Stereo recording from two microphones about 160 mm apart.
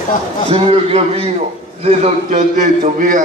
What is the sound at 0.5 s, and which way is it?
A man's voice, 40° right (ahead or behind).